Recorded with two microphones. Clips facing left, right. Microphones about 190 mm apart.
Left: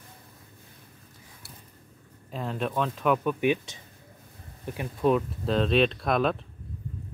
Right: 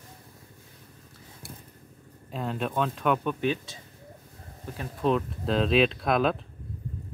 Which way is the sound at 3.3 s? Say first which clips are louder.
Left 3 dB; 15° left (ahead or behind).